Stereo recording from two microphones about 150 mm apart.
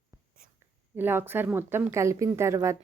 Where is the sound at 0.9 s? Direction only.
15° right (ahead or behind).